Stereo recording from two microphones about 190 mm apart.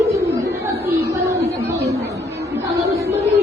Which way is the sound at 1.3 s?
15° right (ahead or behind).